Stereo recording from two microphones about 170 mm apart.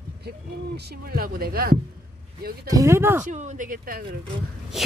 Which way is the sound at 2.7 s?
20° right (ahead or behind).